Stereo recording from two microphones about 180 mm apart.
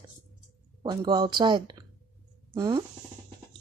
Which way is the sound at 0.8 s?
25° right (ahead or behind).